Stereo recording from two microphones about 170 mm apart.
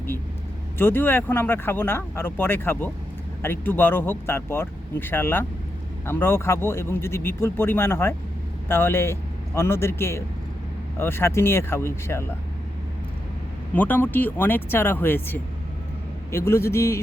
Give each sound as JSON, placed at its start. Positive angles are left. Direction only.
{"t": 0.8, "sound": "speech", "side_deg": 10}
{"t": 13.7, "sound": "speech", "side_deg": 10}